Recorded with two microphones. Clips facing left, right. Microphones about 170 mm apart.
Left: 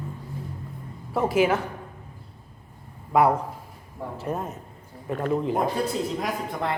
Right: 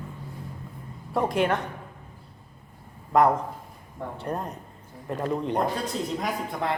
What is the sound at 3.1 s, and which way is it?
Speech, 10° left (ahead or behind).